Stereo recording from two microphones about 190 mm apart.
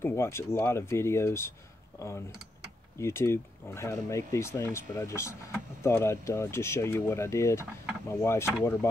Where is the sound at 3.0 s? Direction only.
15° left (ahead or behind).